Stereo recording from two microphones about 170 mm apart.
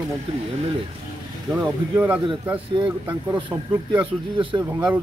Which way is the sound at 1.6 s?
10° right (ahead or behind).